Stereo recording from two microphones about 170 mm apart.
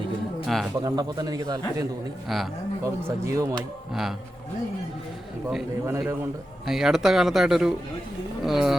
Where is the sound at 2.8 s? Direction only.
20° right (ahead or behind).